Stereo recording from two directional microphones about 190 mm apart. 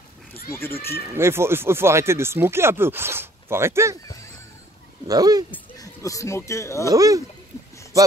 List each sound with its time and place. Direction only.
0.5 s speech: 10° left (ahead or behind)
1.1 s speech: 15° right (ahead or behind)
5.0 s speech: 20° right (ahead or behind)
5.5 s speech: 15° left (ahead or behind)
6.9 s speech: 20° right (ahead or behind)